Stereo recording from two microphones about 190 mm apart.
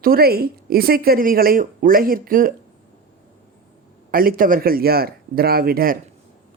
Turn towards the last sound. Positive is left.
turn(degrees=-50)  # may be behind; listen again after turning